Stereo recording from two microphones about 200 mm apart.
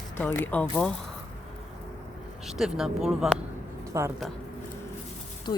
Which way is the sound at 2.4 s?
Centre (ahead or behind).